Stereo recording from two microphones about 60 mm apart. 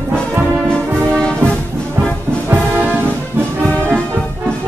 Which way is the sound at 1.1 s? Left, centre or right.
Centre.